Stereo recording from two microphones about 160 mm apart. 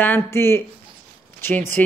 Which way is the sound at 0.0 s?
15° left (ahead or behind).